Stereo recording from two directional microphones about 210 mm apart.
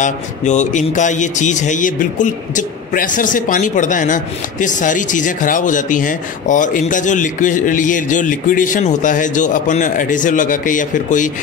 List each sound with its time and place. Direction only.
0.0 s a man's voice: 35° left (ahead or behind)